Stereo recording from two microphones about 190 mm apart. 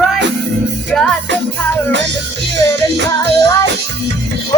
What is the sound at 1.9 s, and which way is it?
Music, 70° right (ahead or behind).